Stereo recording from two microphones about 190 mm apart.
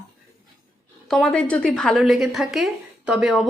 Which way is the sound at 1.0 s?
5° left (ahead or behind).